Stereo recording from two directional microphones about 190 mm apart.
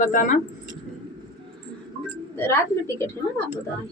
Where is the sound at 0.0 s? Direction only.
45° left (ahead or behind).